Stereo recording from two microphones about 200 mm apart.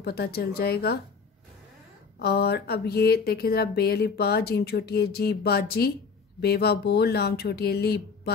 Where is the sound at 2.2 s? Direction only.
55° left (ahead or behind).